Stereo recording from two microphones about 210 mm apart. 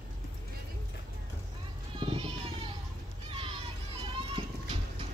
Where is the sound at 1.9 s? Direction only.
25° right (ahead or behind).